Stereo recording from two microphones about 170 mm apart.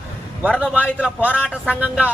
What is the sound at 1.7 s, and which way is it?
Speech, 10° right (ahead or behind).